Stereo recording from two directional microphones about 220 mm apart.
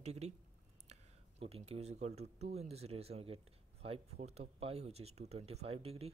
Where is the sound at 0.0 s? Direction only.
30° right (ahead or behind).